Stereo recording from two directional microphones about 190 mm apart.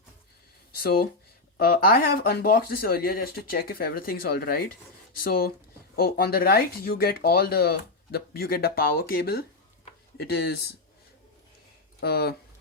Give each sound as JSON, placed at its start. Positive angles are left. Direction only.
{"t": 0.8, "sound": "speech", "side_deg": 50}
{"t": 11.9, "sound": "speech", "side_deg": 55}